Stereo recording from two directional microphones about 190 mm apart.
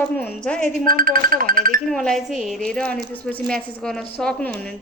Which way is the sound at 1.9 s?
5° left (ahead or behind).